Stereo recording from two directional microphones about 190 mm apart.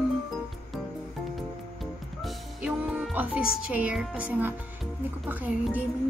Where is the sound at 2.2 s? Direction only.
5° right (ahead or behind).